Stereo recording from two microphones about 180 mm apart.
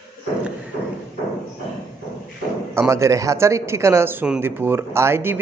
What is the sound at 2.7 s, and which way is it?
Speech, 15° right (ahead or behind).